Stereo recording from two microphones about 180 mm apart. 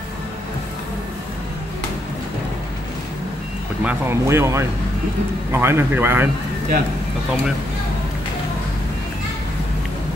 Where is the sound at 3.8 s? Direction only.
15° right (ahead or behind).